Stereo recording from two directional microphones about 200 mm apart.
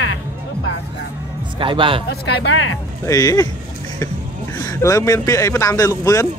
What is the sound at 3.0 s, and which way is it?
Speech, 15° left (ahead or behind).